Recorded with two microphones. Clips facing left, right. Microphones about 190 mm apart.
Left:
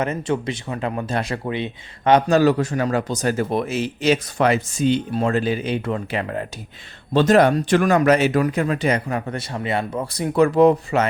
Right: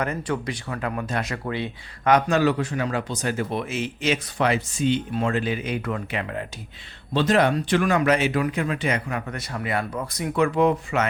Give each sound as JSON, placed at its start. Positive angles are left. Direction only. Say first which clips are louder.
{"t": 0.0, "sound": "speech", "louder": "left 4 dB", "side_deg": 25}
{"t": 1.5, "sound": "speech", "louder": "left 3 dB", "side_deg": 20}